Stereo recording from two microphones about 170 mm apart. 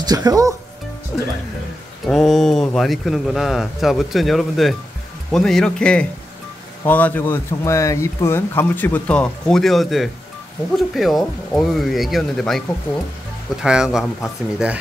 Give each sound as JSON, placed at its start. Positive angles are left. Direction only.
{"t": 0.0, "sound": "speech", "side_deg": -20}
{"t": 1.1, "sound": "speech", "side_deg": 0}